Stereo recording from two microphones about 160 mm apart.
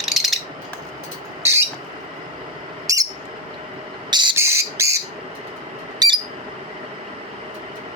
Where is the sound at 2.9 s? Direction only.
20° right (ahead or behind).